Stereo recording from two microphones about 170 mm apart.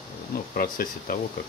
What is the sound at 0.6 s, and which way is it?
Speech, 60° left (ahead or behind).